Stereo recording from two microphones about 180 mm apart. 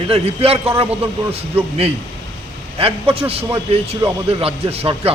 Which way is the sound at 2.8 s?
30° right (ahead or behind).